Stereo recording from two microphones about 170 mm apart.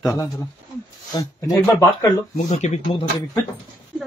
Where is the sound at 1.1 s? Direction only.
20° left (ahead or behind).